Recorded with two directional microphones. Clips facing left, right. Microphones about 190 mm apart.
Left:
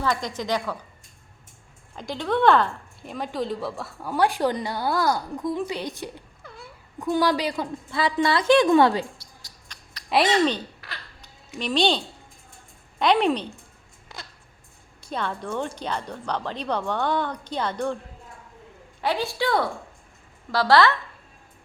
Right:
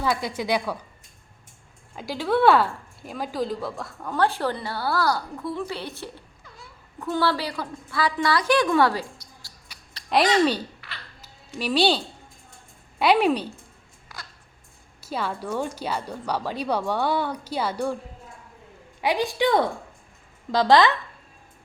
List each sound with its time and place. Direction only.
0.0 s speech: 10° right (ahead or behind)
2.0 s a woman's voice: 5° right (ahead or behind); by 9.5 s 20° left (ahead or behind)
9.7 s a sound: 10° right (ahead or behind)
10.1 s speech: centre (ahead or behind)
14.1 s a sound: 25° left (ahead or behind)
15.0 s speech: 5° right (ahead or behind)
19.0 s speech: 15° right (ahead or behind)